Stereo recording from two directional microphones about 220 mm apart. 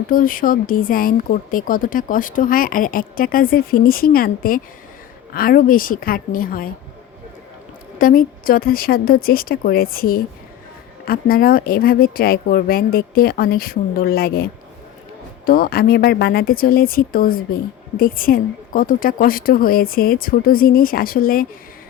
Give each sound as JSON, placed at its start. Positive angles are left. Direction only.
{"t": 0.1, "sound": "speech", "side_deg": 40}
{"t": 7.9, "sound": "a woman's voice", "side_deg": 40}
{"t": 15.4, "sound": "speech", "side_deg": 40}